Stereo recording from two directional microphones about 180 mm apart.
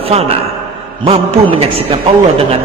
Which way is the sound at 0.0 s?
35° right (ahead or behind).